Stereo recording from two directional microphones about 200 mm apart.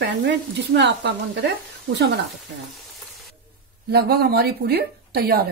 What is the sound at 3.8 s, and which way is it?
A woman's voice, 50° right (ahead or behind).